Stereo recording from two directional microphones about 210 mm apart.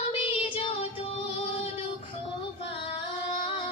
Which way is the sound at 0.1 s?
25° left (ahead or behind).